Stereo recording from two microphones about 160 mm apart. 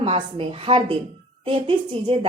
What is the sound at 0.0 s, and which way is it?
A woman's voice, 35° right (ahead or behind).